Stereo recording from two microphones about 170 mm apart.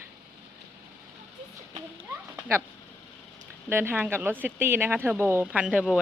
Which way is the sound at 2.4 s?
10° right (ahead or behind).